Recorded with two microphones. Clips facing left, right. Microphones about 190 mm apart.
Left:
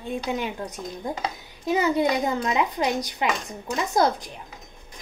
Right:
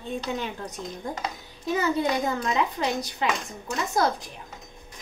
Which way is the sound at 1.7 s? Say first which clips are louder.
Left 3 dB; 15° left (ahead or behind).